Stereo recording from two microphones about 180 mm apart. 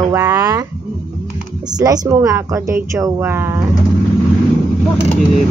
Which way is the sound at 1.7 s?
20° right (ahead or behind).